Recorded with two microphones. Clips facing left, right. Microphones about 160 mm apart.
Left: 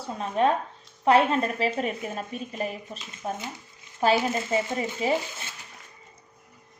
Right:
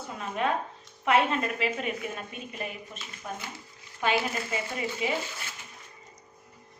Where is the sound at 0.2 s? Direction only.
35° left (ahead or behind).